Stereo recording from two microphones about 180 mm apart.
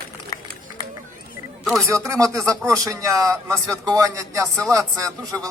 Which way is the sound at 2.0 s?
20° right (ahead or behind).